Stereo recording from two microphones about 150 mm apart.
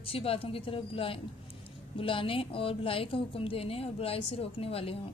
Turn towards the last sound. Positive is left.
turn(degrees=40)  # may be behind; listen again after turning